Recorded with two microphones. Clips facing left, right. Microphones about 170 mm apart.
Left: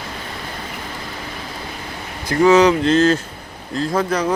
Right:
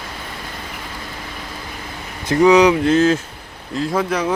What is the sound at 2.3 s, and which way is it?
Speech, 15° right (ahead or behind).